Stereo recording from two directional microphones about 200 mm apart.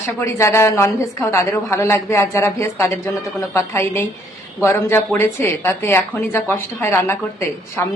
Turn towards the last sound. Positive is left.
turn(degrees=10)  # may be behind; listen again after turning